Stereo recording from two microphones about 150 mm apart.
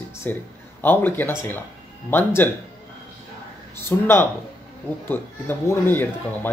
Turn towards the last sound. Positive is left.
turn(degrees=15)  # may be behind; listen again after turning